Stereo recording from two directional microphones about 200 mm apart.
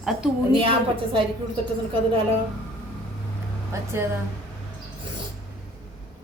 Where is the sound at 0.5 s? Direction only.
25° right (ahead or behind).